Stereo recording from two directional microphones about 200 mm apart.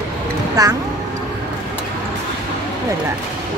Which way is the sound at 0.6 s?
20° right (ahead or behind).